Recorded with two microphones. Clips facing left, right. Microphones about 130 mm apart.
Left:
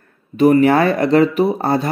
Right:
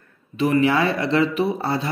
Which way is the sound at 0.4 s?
45° left (ahead or behind).